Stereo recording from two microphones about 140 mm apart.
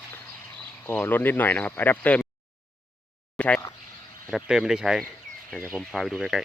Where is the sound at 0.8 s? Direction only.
15° left (ahead or behind).